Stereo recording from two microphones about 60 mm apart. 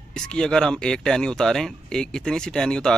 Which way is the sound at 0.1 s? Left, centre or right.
Centre.